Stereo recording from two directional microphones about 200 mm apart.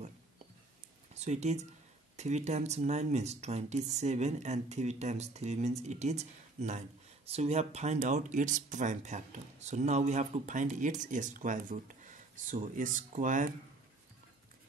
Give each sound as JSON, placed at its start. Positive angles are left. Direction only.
{"t": 1.1, "sound": "speech", "side_deg": -35}